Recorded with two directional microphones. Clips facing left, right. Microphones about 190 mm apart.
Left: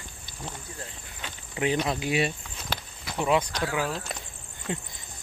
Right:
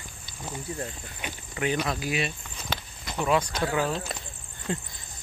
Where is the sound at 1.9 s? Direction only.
25° left (ahead or behind).